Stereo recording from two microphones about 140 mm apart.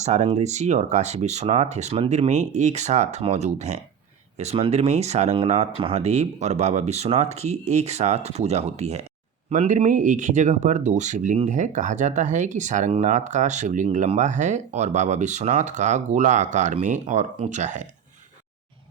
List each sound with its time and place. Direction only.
0.0 s speech: 55° right (ahead or behind)